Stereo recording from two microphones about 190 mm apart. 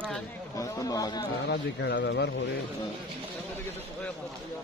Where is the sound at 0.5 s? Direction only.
15° left (ahead or behind).